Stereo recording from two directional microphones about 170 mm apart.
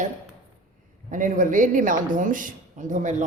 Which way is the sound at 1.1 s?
50° right (ahead or behind).